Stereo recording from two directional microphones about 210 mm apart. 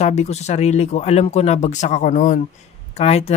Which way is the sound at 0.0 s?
30° left (ahead or behind).